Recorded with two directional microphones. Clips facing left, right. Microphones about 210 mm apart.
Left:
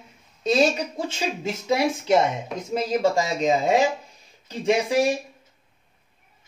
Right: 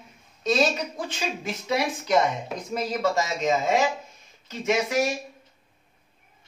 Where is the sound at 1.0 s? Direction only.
25° left (ahead or behind).